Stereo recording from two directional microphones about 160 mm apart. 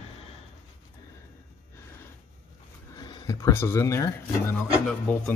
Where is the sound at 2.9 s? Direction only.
25° left (ahead or behind).